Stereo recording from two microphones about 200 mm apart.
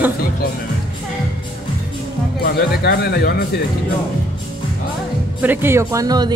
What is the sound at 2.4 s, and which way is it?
Speech, 50° left (ahead or behind).